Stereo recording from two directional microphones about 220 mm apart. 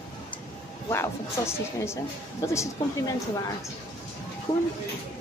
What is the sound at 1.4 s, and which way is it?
A woman's voice, 15° left (ahead or behind).